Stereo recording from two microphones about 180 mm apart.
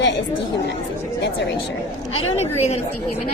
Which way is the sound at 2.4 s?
35° left (ahead or behind).